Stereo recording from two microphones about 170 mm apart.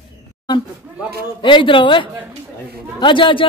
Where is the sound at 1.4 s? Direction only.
30° left (ahead or behind).